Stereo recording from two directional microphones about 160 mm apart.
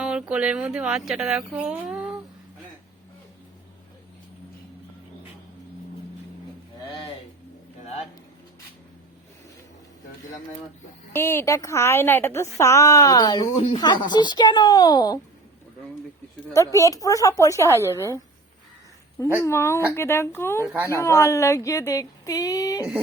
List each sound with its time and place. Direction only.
0.0 s speech: 5° right (ahead or behind)
11.1 s a woman's voice: 15° left (ahead or behind)
16.5 s a woman's voice: 20° left (ahead or behind)
19.4 s a woman's voice: 15° left (ahead or behind)
20.7 s a woman's voice: 10° right (ahead or behind)
20.9 s a woman's voice: 15° left (ahead or behind)